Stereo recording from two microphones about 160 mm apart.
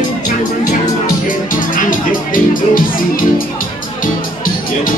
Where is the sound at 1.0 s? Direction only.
55° left (ahead or behind).